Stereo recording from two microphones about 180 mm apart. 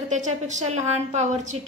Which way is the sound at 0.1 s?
40° right (ahead or behind).